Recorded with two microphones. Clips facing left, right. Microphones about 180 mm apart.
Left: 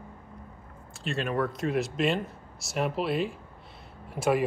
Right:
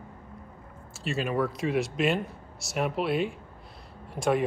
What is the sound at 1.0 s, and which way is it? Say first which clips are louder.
Speech: right 1 dB; centre (ahead or behind).